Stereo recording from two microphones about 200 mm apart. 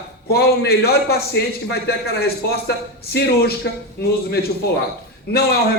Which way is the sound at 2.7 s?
50° left (ahead or behind).